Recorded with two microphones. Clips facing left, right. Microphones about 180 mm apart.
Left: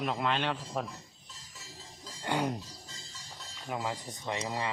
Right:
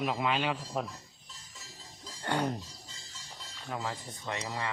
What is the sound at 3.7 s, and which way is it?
Speech, 15° left (ahead or behind).